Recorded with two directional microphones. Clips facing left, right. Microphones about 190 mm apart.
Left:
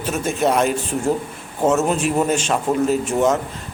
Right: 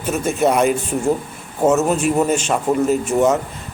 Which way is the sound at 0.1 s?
5° right (ahead or behind).